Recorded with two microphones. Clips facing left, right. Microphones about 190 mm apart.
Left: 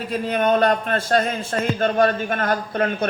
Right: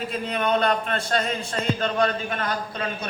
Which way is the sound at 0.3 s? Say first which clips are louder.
Left 5 dB; 45° left (ahead or behind).